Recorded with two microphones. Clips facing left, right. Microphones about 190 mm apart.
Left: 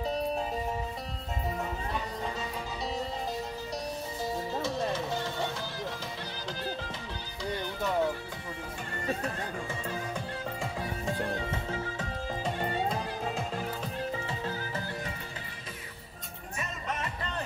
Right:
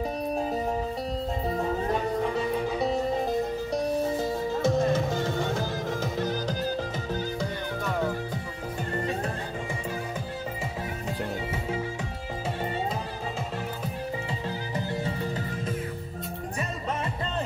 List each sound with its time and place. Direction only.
2.2 s music: 60° right (ahead or behind)